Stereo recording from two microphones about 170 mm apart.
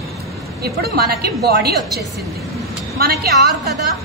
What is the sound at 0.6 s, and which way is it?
A woman's voice, 65° right (ahead or behind).